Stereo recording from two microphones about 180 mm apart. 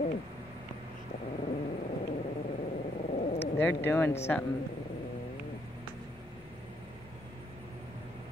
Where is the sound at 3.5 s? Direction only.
10° left (ahead or behind).